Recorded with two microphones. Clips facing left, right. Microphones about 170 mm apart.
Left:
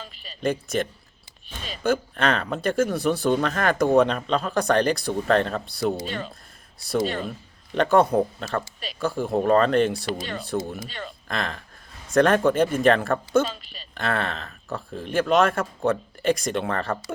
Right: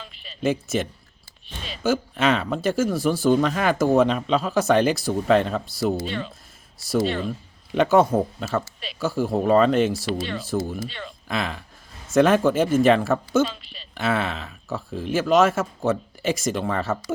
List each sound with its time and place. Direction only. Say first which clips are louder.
0.0 s a sound: left 1 dB; 40° left (ahead or behind)
0.4 s speech: right 1 dB; 5° right (ahead or behind)
6.1 s speech: right 2 dB; 45° left (ahead or behind)
7.8 s speech: right 1 dB; 5° right (ahead or behind)
10.8 s speech: right 1 dB; 45° left (ahead or behind)
11.3 s speech: right 3 dB; 5° right (ahead or behind)
13.5 s speech: left 1 dB; 45° left (ahead or behind)
13.9 s speech: right 2 dB; 5° right (ahead or behind)